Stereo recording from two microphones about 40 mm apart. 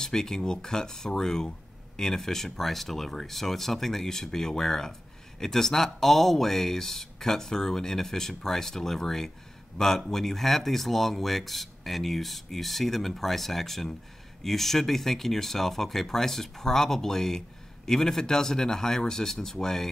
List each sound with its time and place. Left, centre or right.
0.0 s speech: centre